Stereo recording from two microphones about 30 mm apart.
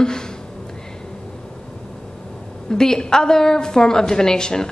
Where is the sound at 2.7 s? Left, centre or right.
Left.